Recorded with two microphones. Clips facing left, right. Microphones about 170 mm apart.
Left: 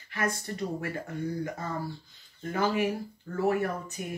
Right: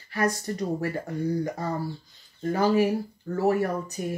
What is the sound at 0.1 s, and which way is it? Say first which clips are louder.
Speech: right 5 dB; 35° right (ahead or behind).